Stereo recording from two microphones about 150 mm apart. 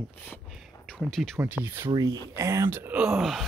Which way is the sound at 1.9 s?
25° right (ahead or behind).